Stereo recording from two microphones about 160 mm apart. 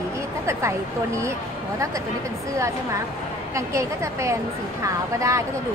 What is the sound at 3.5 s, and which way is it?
A woman's voice, 20° right (ahead or behind).